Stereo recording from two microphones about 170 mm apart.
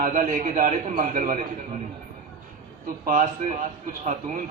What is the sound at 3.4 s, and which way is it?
Speech, 45° right (ahead or behind).